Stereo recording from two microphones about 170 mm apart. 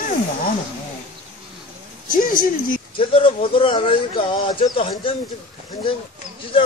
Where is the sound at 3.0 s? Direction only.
30° left (ahead or behind).